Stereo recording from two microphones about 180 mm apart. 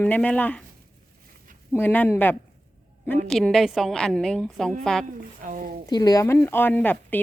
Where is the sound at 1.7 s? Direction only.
10° left (ahead or behind).